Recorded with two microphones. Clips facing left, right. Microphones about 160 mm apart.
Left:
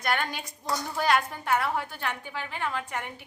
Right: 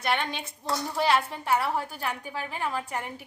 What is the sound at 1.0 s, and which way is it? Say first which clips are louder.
A woman's voice: even; 30° right (ahead or behind).